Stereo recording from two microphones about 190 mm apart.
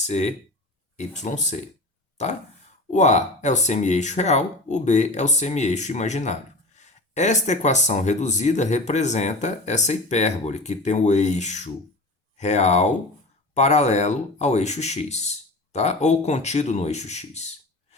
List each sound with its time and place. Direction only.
0.0 s speech: 35° left (ahead or behind)
2.9 s speech: 40° left (ahead or behind)